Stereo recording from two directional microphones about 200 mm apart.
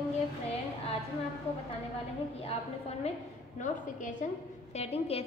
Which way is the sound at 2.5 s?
30° left (ahead or behind).